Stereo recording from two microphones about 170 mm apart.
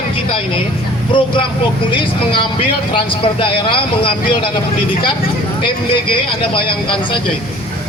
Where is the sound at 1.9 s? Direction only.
30° left (ahead or behind).